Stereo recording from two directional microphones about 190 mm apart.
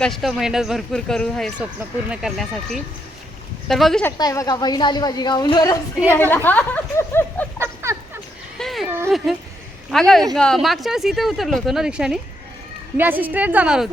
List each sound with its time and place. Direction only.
0.0 s speech: centre (ahead or behind)
4.0 s a woman's voice: 15° left (ahead or behind)
6.1 s a woman's voice: 10° left (ahead or behind)
7.1 s a sound: 10° left (ahead or behind)
9.0 s a woman's voice: centre (ahead or behind)